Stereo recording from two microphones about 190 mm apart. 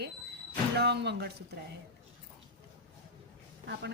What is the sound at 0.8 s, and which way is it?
Speech, 60° right (ahead or behind).